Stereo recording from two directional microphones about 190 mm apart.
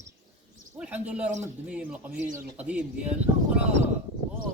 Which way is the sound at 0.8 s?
5° right (ahead or behind).